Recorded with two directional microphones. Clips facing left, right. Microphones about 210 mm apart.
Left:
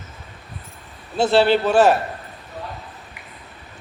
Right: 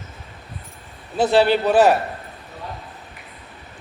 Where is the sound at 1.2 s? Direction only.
15° right (ahead or behind).